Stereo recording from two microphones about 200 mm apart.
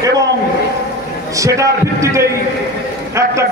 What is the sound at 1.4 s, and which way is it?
Speech, 15° right (ahead or behind).